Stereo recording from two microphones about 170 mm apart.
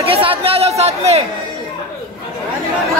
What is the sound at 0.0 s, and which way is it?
Chatter, 35° right (ahead or behind).